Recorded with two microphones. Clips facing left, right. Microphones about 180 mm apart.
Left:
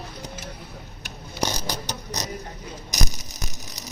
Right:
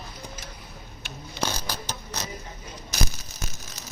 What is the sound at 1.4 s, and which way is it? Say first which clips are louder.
Mechanisms: left 3 dB; 15° left (ahead or behind).